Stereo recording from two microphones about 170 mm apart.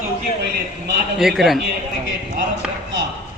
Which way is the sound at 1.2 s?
Centre (ahead or behind).